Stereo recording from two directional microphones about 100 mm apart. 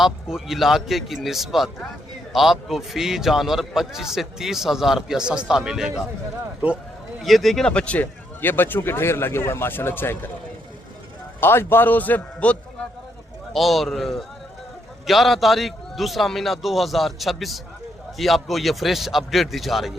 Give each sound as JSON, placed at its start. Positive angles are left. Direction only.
{"t": 0.0, "sound": "a man's voice", "side_deg": -5}
{"t": 7.2, "sound": "speech", "side_deg": 0}
{"t": 11.3, "sound": "speech", "side_deg": 20}
{"t": 13.5, "sound": "a man's voice", "side_deg": 0}